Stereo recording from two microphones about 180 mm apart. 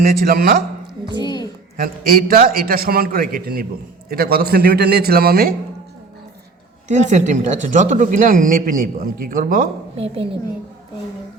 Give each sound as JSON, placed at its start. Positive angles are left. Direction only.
{"t": 0.0, "sound": "speech", "side_deg": -55}
{"t": 1.2, "sound": "a sound", "side_deg": 20}
{"t": 1.7, "sound": "a man's voice", "side_deg": -50}
{"t": 6.8, "sound": "speech", "side_deg": -40}